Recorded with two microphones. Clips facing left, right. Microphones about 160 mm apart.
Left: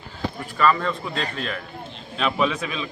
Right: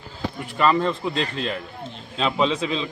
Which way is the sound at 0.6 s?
25° right (ahead or behind).